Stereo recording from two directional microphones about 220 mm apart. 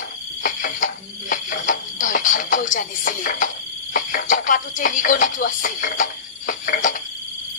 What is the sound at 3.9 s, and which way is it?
Speech, 35° left (ahead or behind).